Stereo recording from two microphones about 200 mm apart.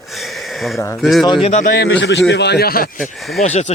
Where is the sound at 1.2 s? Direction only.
25° left (ahead or behind).